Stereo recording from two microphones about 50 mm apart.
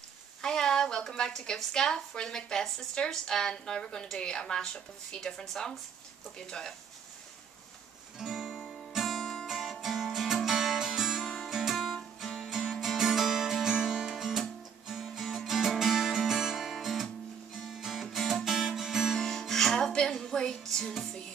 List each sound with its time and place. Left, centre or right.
0.4 s a woman's voice: centre
8.2 s guitar: centre
9.0 s music: centre
9.5 s music: centre
19.1 s music: centre